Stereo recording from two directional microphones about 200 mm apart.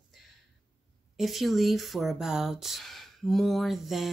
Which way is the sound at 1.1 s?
Centre (ahead or behind).